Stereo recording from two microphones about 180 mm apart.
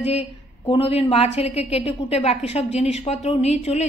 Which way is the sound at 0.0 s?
35° left (ahead or behind).